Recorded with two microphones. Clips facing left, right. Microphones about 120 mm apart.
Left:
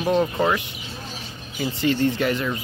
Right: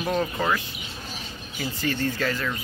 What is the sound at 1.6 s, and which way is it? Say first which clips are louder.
Speech: left 6 dB; 20° left (ahead or behind).